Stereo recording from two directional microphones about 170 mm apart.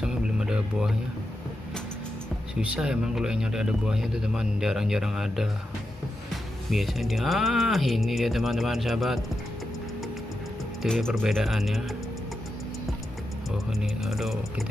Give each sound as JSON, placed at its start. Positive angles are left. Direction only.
{"t": 0.0, "sound": "music", "side_deg": -5}
{"t": 2.6, "sound": "speech", "side_deg": -5}
{"t": 6.7, "sound": "speech", "side_deg": 0}
{"t": 10.8, "sound": "speech", "side_deg": 5}
{"t": 14.0, "sound": "speech", "side_deg": 0}